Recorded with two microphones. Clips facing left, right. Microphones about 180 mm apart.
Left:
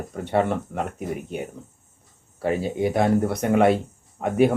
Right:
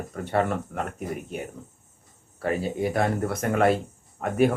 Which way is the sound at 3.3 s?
20° left (ahead or behind).